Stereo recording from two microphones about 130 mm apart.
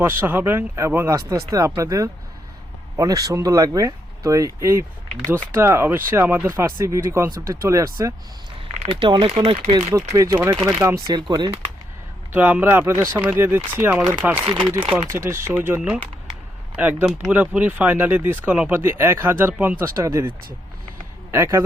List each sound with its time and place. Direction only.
0.0 s speech: 15° right (ahead or behind)
8.8 s speech: 45° right (ahead or behind)
9.7 s speech: 25° right (ahead or behind)
11.1 s speech: 35° right (ahead or behind)
12.3 s speech: 10° right (ahead or behind)
21.3 s speech: 15° right (ahead or behind)